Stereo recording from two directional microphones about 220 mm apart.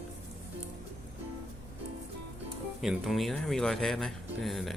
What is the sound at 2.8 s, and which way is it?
Speech, centre (ahead or behind).